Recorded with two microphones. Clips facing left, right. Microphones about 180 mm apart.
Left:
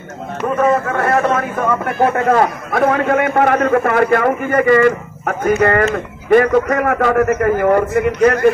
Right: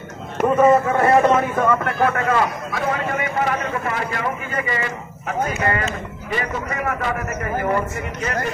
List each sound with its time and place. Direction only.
0.6 s a man's voice: 5° right (ahead or behind)
2.1 s a man's voice: 45° left (ahead or behind)